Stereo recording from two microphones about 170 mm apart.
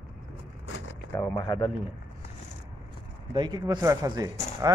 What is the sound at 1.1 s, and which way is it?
Speech, 20° left (ahead or behind).